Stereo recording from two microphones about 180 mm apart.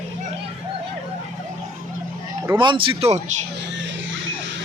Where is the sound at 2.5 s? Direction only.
25° right (ahead or behind).